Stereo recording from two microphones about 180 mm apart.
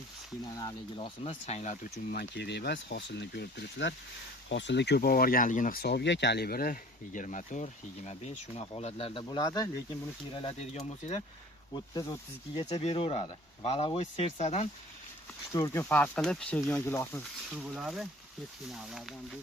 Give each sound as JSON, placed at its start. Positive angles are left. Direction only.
{"t": 0.5, "sound": "speech", "side_deg": 25}
{"t": 2.1, "sound": "speech", "side_deg": 70}
{"t": 10.3, "sound": "speech", "side_deg": 35}
{"t": 11.7, "sound": "speech", "side_deg": 20}
{"t": 12.5, "sound": "speech", "side_deg": 30}
{"t": 15.5, "sound": "speech", "side_deg": 15}
{"t": 17.5, "sound": "speech", "side_deg": 0}